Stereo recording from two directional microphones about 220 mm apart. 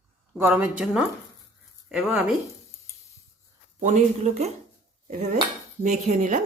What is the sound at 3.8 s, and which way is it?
Speech, 30° right (ahead or behind).